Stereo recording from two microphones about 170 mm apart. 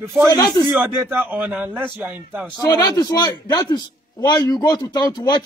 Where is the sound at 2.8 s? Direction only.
20° left (ahead or behind).